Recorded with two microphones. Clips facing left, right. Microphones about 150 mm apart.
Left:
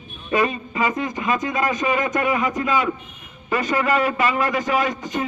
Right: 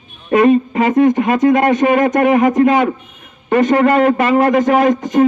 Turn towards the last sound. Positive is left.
turn(degrees=-50)  # may be behind; listen again after turning